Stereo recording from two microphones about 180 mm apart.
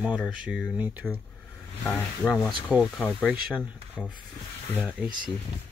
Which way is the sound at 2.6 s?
5° right (ahead or behind).